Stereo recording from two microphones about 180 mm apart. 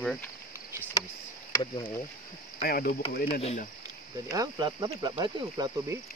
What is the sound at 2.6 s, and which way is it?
Speech, 55° left (ahead or behind).